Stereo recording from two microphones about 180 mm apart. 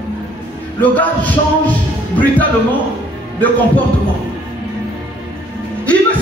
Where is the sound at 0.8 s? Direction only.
10° left (ahead or behind).